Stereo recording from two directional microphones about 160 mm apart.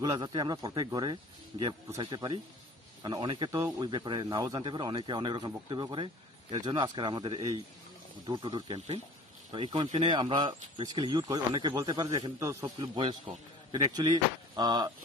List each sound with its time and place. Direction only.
0.0 s speech: 25° right (ahead or behind)